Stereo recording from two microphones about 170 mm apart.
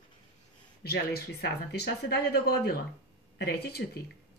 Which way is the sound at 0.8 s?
65° left (ahead or behind).